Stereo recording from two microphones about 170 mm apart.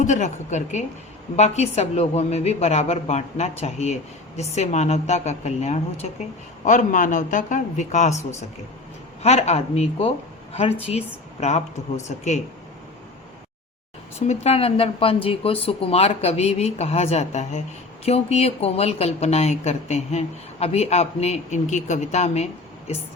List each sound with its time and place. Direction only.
0.0 s a woman's voice: 45° left (ahead or behind)
14.2 s a woman's voice: 40° left (ahead or behind)